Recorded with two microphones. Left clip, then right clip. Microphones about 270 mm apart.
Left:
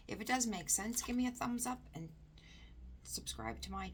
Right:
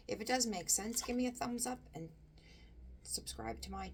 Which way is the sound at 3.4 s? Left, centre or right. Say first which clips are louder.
Even; centre.